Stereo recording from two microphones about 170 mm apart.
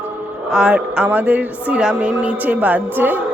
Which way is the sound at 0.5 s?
5° right (ahead or behind).